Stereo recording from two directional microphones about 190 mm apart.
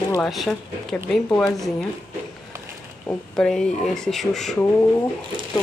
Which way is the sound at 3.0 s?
5° left (ahead or behind).